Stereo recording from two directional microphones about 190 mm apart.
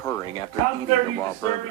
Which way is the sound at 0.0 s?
15° left (ahead or behind).